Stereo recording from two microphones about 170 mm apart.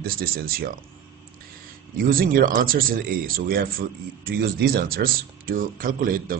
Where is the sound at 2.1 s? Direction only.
55° right (ahead or behind).